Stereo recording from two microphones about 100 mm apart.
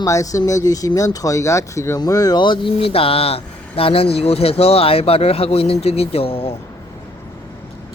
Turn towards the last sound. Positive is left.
turn(degrees=75)  # may be behind; listen again after turning